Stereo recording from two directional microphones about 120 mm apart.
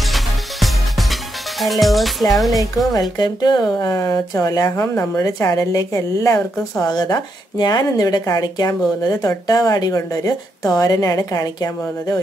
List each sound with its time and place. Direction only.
0.1 s music: centre (ahead or behind)
1.6 s speech: centre (ahead or behind)
3.2 s speech: 35° left (ahead or behind)